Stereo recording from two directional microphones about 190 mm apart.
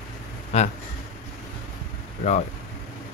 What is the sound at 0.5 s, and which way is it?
Speech, 35° left (ahead or behind).